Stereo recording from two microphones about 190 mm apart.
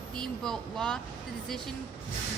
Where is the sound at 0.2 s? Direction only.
5° left (ahead or behind).